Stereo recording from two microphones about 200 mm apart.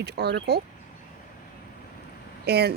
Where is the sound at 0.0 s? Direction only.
55° right (ahead or behind).